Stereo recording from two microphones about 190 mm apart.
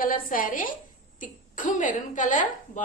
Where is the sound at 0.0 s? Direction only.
45° left (ahead or behind).